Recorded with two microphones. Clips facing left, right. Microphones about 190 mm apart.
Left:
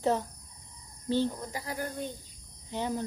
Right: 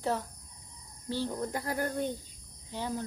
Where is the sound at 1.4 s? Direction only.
55° right (ahead or behind).